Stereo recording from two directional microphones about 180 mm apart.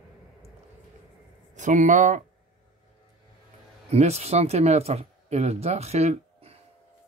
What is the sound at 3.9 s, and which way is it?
Speech, 35° right (ahead or behind).